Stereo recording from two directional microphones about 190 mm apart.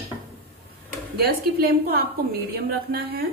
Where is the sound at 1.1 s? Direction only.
55° right (ahead or behind).